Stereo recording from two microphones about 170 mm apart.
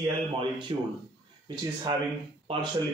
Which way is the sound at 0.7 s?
30° right (ahead or behind).